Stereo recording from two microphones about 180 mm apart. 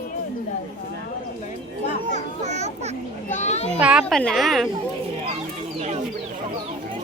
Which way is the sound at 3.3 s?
40° left (ahead or behind).